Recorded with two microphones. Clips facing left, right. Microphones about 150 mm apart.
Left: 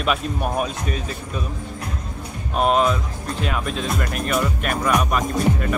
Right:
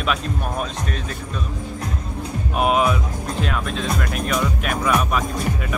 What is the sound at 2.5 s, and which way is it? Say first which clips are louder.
Speech: left 1 dB; 5° right (ahead or behind).